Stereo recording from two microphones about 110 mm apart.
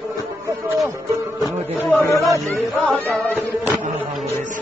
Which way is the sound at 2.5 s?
10° left (ahead or behind).